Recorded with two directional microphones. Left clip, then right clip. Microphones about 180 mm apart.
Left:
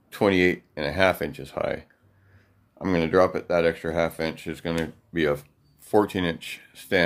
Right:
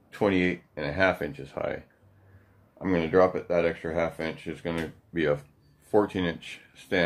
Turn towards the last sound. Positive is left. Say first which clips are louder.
# left 4 dB
turn(degrees=50)  # may be behind; listen again after turning